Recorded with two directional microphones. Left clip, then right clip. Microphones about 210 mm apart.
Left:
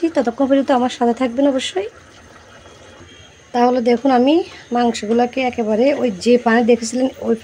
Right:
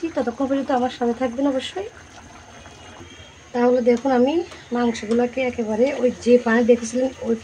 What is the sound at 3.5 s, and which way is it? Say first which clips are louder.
Speech: left 3 dB; 45° left (ahead or behind).